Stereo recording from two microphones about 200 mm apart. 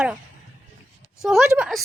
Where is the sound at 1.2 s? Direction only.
Centre (ahead or behind).